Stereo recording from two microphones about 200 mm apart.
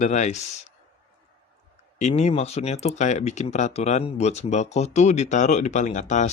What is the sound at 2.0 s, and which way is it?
Speech, 35° left (ahead or behind).